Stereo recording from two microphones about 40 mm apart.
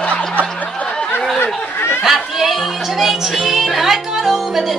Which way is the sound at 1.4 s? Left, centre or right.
Left.